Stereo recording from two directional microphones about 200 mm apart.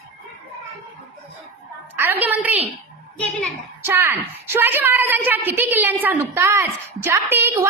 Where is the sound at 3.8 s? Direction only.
10° right (ahead or behind).